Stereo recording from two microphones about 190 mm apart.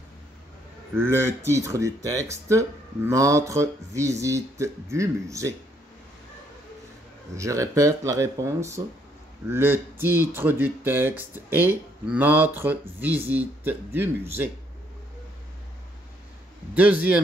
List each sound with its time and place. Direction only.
0.9 s speech: 15° right (ahead or behind)
7.3 s speech: 15° right (ahead or behind)
16.7 s speech: 10° right (ahead or behind)